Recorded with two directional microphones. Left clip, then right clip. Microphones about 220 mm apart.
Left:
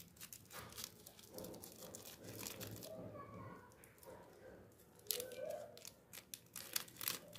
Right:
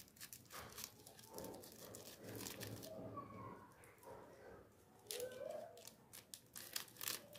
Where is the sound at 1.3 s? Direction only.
10° left (ahead or behind).